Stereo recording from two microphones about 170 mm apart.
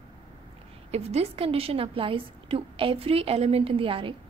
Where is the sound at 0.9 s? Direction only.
35° right (ahead or behind).